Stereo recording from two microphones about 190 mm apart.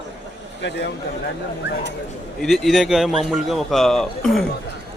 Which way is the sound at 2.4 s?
Centre (ahead or behind).